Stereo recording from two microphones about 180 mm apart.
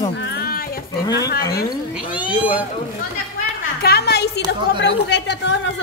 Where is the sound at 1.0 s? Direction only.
20° left (ahead or behind).